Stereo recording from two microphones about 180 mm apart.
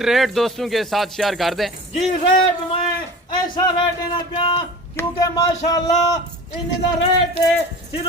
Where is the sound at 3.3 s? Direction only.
25° left (ahead or behind).